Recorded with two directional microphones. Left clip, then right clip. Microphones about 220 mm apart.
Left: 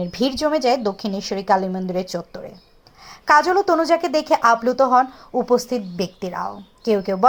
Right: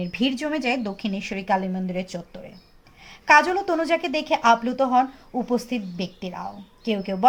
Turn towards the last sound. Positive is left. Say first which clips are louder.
# left 7 dB
turn(degrees=20)  # may be behind; listen again after turning